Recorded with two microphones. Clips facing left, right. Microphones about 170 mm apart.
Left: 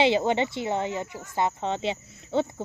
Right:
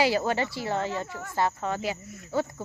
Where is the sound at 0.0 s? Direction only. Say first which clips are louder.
Left 3 dB; 20° left (ahead or behind).